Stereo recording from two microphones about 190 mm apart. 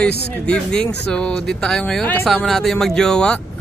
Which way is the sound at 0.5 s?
5° left (ahead or behind).